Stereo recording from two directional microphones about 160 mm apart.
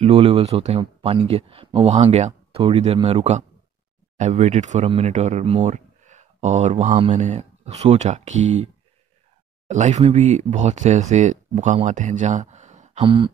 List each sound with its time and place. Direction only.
0.0 s speech: 40° right (ahead or behind)
9.7 s speech: 45° right (ahead or behind)